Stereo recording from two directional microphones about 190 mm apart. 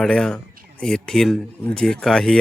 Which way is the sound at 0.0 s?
5° left (ahead or behind).